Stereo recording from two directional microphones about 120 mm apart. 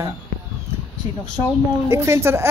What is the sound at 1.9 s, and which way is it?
Speech, 20° right (ahead or behind).